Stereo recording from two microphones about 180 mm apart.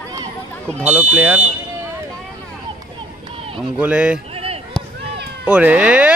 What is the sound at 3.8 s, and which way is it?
Speech, 5° right (ahead or behind).